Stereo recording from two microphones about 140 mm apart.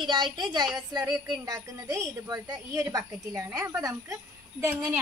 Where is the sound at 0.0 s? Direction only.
35° right (ahead or behind).